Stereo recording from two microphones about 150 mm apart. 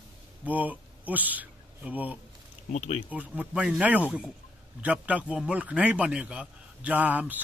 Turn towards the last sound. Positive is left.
turn(degrees=-10)  # may be behind; listen again after turning